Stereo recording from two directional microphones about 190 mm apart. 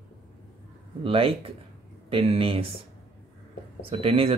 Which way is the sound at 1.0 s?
30° right (ahead or behind).